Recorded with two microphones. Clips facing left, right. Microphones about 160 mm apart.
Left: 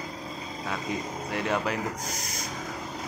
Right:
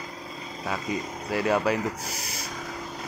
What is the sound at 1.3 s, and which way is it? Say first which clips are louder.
Speech: right 5 dB; 5° right (ahead or behind).